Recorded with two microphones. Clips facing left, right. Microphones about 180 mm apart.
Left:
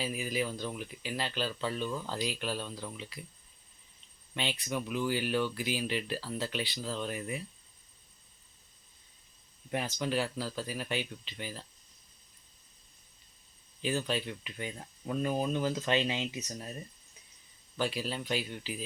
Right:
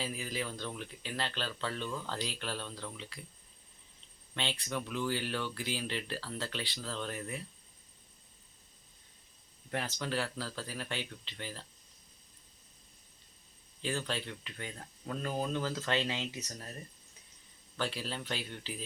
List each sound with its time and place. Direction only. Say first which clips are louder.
0.0 s speech: left 4 dB; 15° left (ahead or behind)
4.4 s speech: left 2 dB; 10° left (ahead or behind)
9.7 s speech: left 3 dB; 15° left (ahead or behind)
13.8 s speech: left 4 dB; 15° left (ahead or behind)
17.7 s speech: left 4 dB; 15° left (ahead or behind)